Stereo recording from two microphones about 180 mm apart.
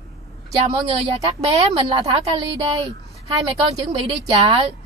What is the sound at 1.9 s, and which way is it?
Speech, 20° right (ahead or behind).